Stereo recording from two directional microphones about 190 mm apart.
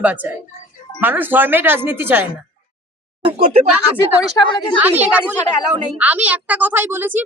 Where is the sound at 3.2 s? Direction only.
30° right (ahead or behind).